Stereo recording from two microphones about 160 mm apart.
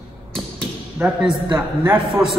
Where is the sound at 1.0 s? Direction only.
15° right (ahead or behind).